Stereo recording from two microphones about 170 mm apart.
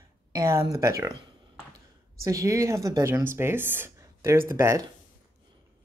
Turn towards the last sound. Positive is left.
turn(degrees=-15)  # may be behind; listen again after turning